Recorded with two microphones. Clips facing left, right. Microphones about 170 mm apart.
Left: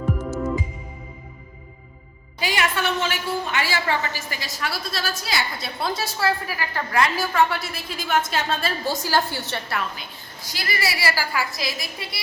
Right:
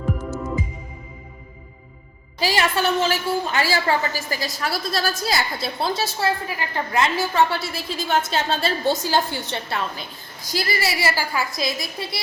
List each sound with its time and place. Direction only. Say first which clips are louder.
2.4 s a woman's voice: right 3 dB; 35° right (ahead or behind)